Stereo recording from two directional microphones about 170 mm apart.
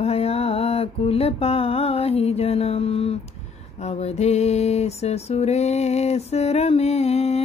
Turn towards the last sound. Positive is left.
turn(degrees=40)  # may be behind; listen again after turning